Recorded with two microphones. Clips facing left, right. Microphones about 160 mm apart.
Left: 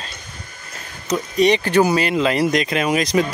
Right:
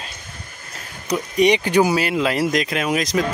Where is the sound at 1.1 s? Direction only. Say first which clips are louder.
Even; 15° right (ahead or behind).